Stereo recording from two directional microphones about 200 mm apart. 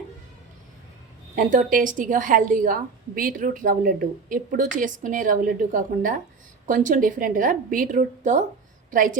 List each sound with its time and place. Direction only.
1.4 s a woman's voice: 40° right (ahead or behind)